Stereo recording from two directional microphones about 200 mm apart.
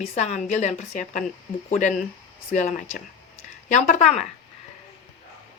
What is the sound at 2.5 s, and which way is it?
Speech, 40° left (ahead or behind).